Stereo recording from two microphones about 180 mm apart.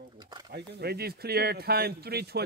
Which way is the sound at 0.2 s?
25° right (ahead or behind).